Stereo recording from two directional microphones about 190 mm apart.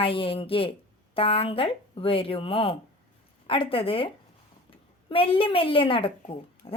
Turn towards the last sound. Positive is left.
turn(degrees=30)  # may be behind; listen again after turning